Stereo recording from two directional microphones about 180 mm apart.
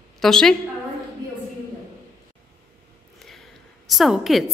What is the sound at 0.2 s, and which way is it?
Speech, 5° left (ahead or behind).